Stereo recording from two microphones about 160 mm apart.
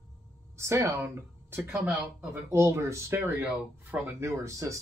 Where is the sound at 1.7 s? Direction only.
5° right (ahead or behind).